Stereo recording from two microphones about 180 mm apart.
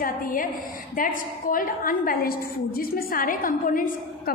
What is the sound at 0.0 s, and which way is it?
A woman's voice, 50° left (ahead or behind).